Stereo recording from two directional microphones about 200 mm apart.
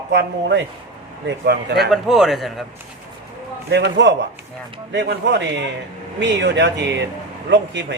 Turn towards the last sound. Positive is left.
turn(degrees=-60)  # may be behind; listen again after turning